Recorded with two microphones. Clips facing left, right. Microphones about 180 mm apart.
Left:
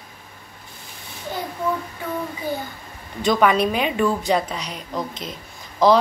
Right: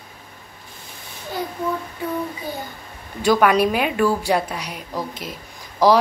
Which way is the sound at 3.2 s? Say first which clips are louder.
Right 2 dB; 5° right (ahead or behind).